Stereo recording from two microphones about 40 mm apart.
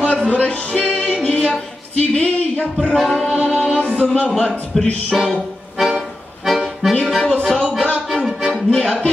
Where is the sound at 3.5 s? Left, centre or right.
Right.